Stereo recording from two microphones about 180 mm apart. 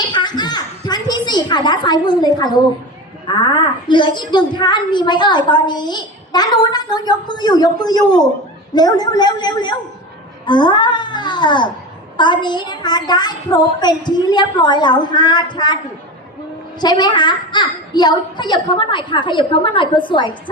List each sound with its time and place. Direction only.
0.0 s a sound: 25° left (ahead or behind)
3.2 s a woman's voice: 25° left (ahead or behind)
16.8 s a woman's voice: 25° left (ahead or behind)